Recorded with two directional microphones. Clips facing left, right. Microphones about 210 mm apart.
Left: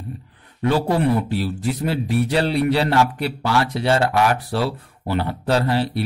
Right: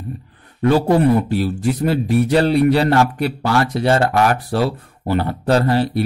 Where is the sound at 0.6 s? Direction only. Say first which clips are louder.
Right 5 dB; 45° right (ahead or behind).